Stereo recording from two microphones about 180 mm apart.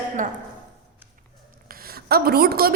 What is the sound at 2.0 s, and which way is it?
Speech, 60° right (ahead or behind).